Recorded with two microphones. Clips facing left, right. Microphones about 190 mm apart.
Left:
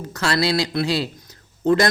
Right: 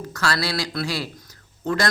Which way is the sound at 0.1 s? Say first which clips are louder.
Left 5 dB; 20° left (ahead or behind).